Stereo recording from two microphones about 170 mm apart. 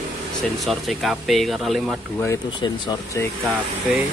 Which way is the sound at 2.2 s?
20° left (ahead or behind).